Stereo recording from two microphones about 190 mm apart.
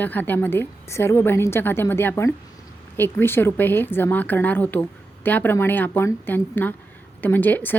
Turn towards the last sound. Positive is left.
turn(degrees=10)  # may be behind; listen again after turning